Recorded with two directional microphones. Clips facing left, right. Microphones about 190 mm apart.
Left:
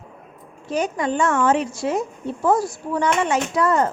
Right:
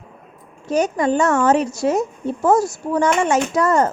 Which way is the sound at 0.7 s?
40° right (ahead or behind).